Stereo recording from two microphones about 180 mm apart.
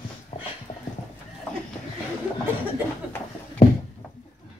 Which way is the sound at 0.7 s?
25° left (ahead or behind).